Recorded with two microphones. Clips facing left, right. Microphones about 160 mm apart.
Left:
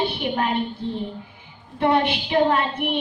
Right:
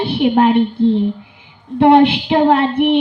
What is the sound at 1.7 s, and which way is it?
Child singing, 65° right (ahead or behind).